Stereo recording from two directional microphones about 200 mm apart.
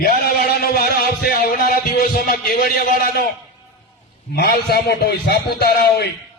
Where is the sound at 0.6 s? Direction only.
50° left (ahead or behind).